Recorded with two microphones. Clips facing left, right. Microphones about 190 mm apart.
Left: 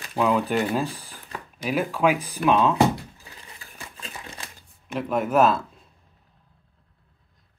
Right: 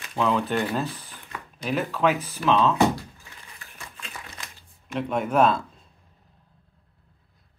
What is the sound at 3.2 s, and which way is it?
Crumpling, 35° left (ahead or behind).